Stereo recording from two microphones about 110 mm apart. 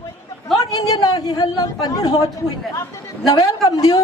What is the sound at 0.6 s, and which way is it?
A woman's voice, 35° left (ahead or behind).